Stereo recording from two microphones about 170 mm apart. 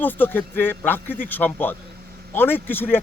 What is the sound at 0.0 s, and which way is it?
A man's voice, 10° left (ahead or behind).